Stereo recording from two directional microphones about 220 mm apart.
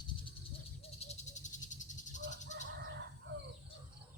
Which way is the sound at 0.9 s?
30° left (ahead or behind).